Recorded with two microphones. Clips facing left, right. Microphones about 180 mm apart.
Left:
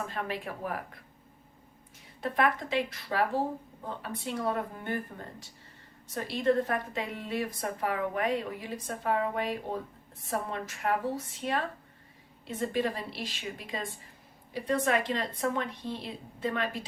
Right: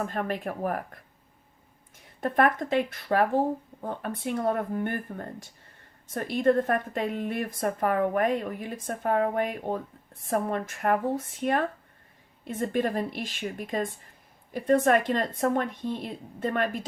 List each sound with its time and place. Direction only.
0.0 s a woman's voice: 50° right (ahead or behind)
2.2 s a woman's voice: 50° right (ahead or behind)